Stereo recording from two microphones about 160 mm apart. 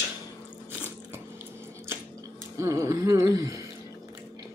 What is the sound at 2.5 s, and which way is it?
Speech, 20° right (ahead or behind).